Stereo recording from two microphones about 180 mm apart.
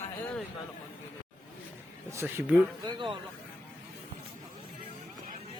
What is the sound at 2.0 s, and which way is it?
Speech, 15° right (ahead or behind).